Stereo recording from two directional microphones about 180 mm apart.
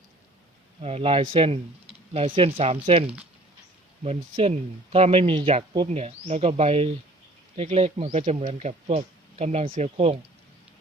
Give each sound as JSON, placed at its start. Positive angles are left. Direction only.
{"t": 0.8, "sound": "speech", "side_deg": -35}
{"t": 4.0, "sound": "speech", "side_deg": -35}